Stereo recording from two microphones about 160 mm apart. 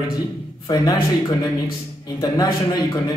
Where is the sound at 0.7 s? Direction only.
25° left (ahead or behind).